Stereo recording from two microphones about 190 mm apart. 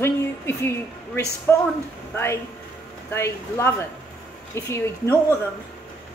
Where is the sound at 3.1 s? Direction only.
15° left (ahead or behind).